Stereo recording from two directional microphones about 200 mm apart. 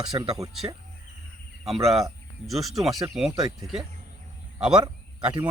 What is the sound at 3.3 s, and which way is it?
Speech, 20° right (ahead or behind).